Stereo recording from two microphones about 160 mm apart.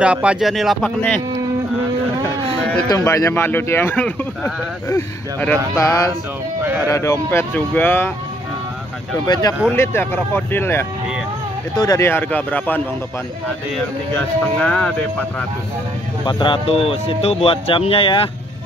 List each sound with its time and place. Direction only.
0.0 s speech: 5° right (ahead or behind)
2.9 s speech: 20° left (ahead or behind)
5.8 s speech: 20° left (ahead or behind)
6.6 s speech: 10° right (ahead or behind)
6.9 s speech: 20° left (ahead or behind)
9.2 s speech: 25° left (ahead or behind)
14.1 s speech: 10° left (ahead or behind)
16.3 s speech: 30° left (ahead or behind)